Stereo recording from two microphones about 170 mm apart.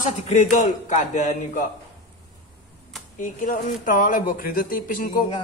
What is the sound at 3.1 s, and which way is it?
Speech, 50° left (ahead or behind).